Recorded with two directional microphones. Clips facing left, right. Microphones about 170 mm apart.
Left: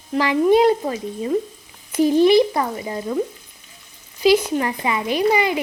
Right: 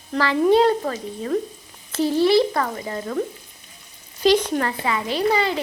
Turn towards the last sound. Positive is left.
turn(degrees=15)  # may be behind; listen again after turning